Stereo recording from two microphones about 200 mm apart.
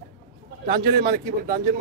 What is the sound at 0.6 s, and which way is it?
A man's voice, 50° right (ahead or behind).